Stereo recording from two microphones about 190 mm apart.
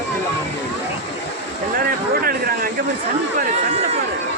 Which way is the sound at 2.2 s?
50° right (ahead or behind).